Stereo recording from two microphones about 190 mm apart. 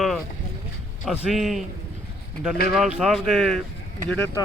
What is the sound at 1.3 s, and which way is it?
Speech, centre (ahead or behind).